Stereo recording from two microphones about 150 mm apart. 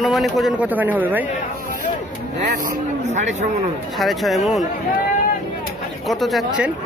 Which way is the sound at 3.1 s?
50° right (ahead or behind).